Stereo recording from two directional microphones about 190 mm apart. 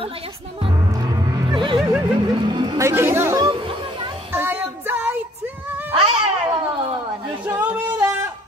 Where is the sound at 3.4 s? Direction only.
25° right (ahead or behind).